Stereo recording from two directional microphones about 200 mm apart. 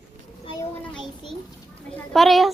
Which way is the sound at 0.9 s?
Centre (ahead or behind).